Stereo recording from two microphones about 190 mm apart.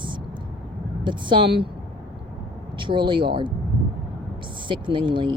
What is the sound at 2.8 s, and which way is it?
Speech, 25° right (ahead or behind).